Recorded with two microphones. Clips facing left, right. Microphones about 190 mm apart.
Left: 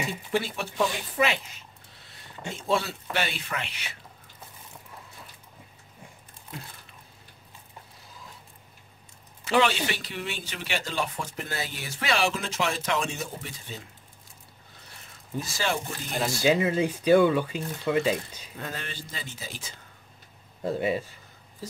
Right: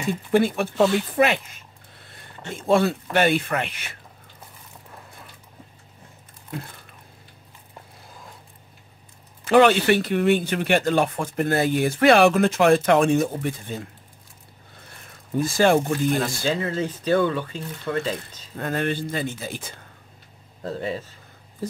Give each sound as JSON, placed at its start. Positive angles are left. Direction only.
{"t": 0.0, "sound": "speech", "side_deg": -55}
{"t": 0.9, "sound": "a sound", "side_deg": -55}
{"t": 2.5, "sound": "speech", "side_deg": -55}
{"t": 9.5, "sound": "speech", "side_deg": -55}
{"t": 14.9, "sound": "a sound", "side_deg": -50}
{"t": 16.4, "sound": "speech", "side_deg": 15}
{"t": 18.6, "sound": "speech", "side_deg": -55}
{"t": 20.6, "sound": "speech", "side_deg": 10}